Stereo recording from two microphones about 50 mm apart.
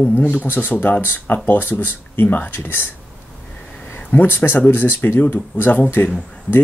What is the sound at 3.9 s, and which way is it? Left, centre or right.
Speech, left.